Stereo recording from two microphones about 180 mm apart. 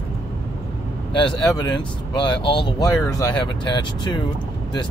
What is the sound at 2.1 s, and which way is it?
Speech, 25° left (ahead or behind).